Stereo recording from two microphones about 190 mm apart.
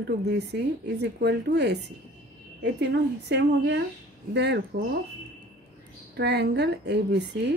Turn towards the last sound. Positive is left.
turn(degrees=-65)  # may be behind; listen again after turning